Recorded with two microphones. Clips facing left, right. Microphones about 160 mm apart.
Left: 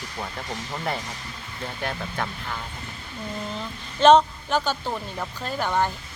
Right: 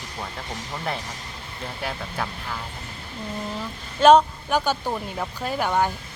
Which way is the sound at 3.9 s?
10° right (ahead or behind).